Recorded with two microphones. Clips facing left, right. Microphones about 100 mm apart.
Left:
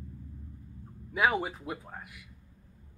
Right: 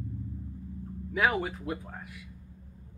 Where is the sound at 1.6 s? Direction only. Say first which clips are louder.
Right 3 dB; 10° left (ahead or behind).